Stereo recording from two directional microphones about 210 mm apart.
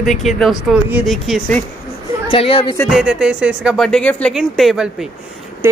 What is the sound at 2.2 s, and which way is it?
Speech, 25° left (ahead or behind).